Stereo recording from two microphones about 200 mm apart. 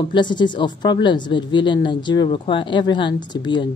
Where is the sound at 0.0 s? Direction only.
25° left (ahead or behind).